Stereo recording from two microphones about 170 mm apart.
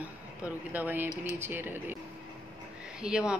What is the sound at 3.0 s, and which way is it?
Speech, 5° right (ahead or behind).